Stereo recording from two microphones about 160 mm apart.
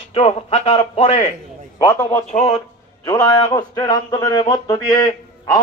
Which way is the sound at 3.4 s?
25° left (ahead or behind).